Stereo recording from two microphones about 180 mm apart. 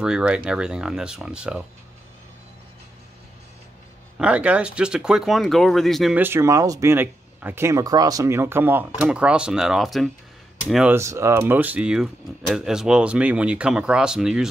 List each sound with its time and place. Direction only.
0.0 s speech: 5° right (ahead or behind)
4.2 s speech: 5° right (ahead or behind)
6.2 s speech: 15° right (ahead or behind)
11.0 s speech: 15° right (ahead or behind)